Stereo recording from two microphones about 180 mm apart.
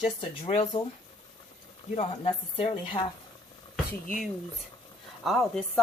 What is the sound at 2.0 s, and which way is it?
Speech, 30° left (ahead or behind).